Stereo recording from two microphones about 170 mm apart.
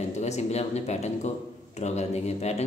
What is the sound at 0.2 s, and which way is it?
A man's voice, 40° left (ahead or behind).